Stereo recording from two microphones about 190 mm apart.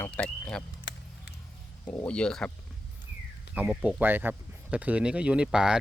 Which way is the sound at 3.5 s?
5° right (ahead or behind).